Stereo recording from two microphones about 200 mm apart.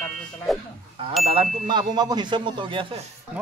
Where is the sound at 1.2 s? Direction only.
30° right (ahead or behind).